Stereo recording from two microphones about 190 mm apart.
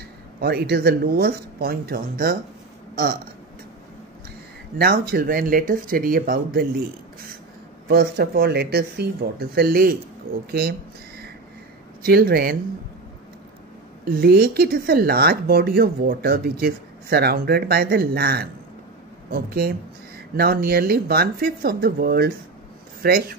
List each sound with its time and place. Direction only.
0.4 s speech: 55° right (ahead or behind)
4.7 s speech: 55° right (ahead or behind)
7.9 s speech: 55° right (ahead or behind)
12.0 s speech: 55° right (ahead or behind)
14.0 s speech: 55° right (ahead or behind)